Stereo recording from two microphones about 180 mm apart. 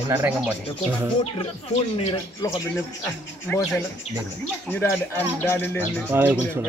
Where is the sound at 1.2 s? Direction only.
35° left (ahead or behind).